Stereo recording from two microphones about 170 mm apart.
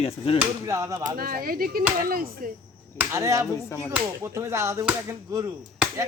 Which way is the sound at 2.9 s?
20° right (ahead or behind).